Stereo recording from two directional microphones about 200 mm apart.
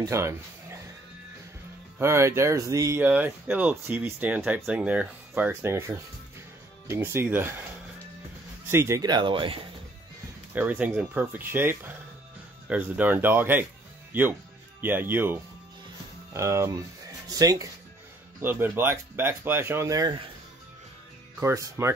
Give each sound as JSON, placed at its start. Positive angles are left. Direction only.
{"t": 0.0, "sound": "speech", "side_deg": -15}
{"t": 2.0, "sound": "speech", "side_deg": -15}
{"t": 8.6, "sound": "speech", "side_deg": -15}
{"t": 10.5, "sound": "speech", "side_deg": -10}
{"t": 14.8, "sound": "speech", "side_deg": -10}
{"t": 16.3, "sound": "speech", "side_deg": -15}
{"t": 21.4, "sound": "speech", "side_deg": -15}